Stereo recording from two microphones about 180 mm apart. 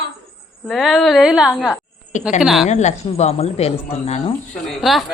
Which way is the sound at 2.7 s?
40° left (ahead or behind).